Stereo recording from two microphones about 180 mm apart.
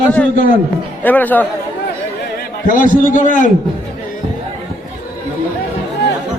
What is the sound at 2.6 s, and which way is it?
Speech, 50° left (ahead or behind).